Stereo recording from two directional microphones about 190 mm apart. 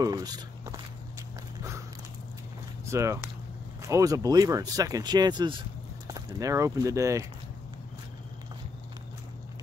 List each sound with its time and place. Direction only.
0.0 s speech: 20° right (ahead or behind)
1.6 s walk: 15° right (ahead or behind)
2.9 s speech: 15° right (ahead or behind)